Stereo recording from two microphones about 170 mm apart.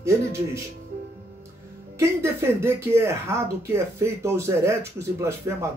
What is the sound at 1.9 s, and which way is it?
Speech, 15° right (ahead or behind).